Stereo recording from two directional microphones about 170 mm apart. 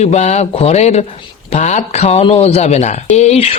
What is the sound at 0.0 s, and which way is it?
Speech, 45° left (ahead or behind).